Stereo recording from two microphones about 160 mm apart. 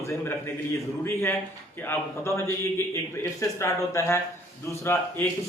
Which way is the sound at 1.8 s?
15° left (ahead or behind).